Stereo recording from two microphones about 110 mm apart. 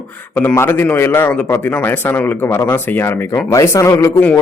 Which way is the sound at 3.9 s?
15° left (ahead or behind).